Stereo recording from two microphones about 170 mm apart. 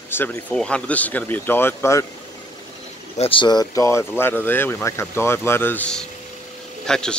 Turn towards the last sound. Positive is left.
turn(degrees=5)  # may be behind; listen again after turning